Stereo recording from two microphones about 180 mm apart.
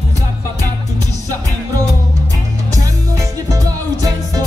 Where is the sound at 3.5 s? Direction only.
20° right (ahead or behind).